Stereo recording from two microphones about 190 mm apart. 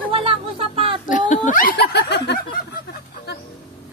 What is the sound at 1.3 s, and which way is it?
Snicker, 40° left (ahead or behind).